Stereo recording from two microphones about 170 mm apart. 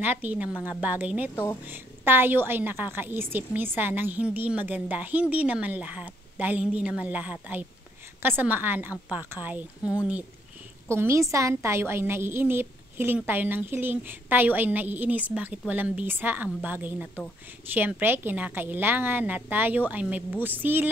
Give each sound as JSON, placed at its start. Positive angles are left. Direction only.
{"t": 0.0, "sound": "a woman's voice", "side_deg": -10}
{"t": 1.3, "sound": "speech", "side_deg": 15}
{"t": 1.7, "sound": "a woman's voice", "side_deg": -10}